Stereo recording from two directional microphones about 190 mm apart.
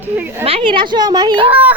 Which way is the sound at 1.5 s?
10° right (ahead or behind).